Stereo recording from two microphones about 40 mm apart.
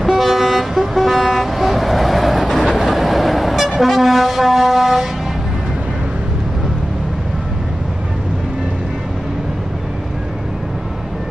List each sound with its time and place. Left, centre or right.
0.0 s vehicle: centre